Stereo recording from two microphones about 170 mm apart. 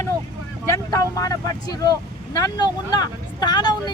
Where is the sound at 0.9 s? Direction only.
20° left (ahead or behind).